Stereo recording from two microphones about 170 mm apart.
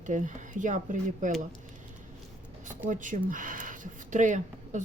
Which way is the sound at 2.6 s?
50° right (ahead or behind).